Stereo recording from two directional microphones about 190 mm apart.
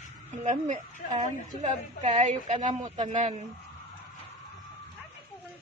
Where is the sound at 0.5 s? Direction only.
40° right (ahead or behind).